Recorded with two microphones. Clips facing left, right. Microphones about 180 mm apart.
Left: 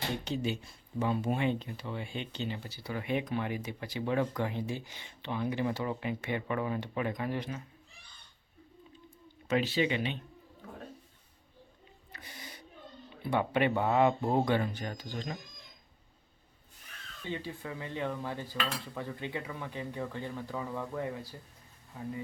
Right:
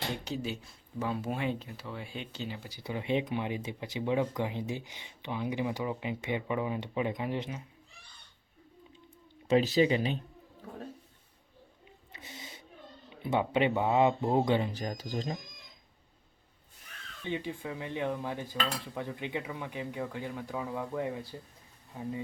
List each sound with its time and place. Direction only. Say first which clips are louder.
0.3 s speech: left 2 dB; centre (ahead or behind); by 7.6 s 20° right (ahead or behind)
9.5 s speech: right 4 dB; 35° right (ahead or behind)
12.1 s gasp: right 1 dB; 25° right (ahead or behind)
13.2 s speech: right 1 dB; 15° right (ahead or behind)
14.7 s speech: right 3 dB; 35° right (ahead or behind)
17.2 s speech: right 3 dB; 15° right (ahead or behind)